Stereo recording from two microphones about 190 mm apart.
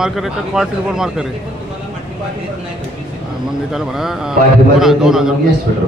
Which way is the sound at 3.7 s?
Centre (ahead or behind).